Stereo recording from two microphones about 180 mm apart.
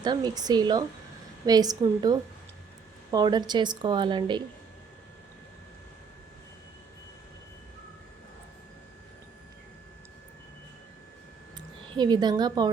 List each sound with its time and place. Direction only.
0.0 s speech: 25° right (ahead or behind)
11.9 s speech: 25° right (ahead or behind)